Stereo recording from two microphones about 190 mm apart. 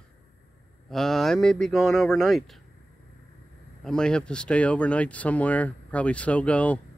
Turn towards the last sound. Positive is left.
turn(degrees=5)  # may be behind; listen again after turning